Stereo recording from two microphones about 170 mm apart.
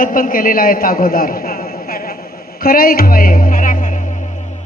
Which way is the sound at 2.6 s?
60° left (ahead or behind).